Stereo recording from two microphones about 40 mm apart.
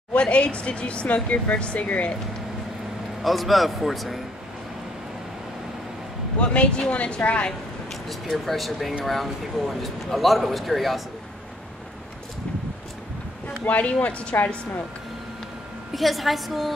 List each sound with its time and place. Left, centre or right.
0.1 s speech: left
3.2 s a man's voice: centre
6.4 s speech: left
7.9 s a man's voice: centre
13.7 s speech: left
15.9 s a man's voice: centre